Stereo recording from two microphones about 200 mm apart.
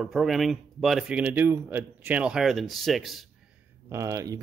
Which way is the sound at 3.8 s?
15° right (ahead or behind).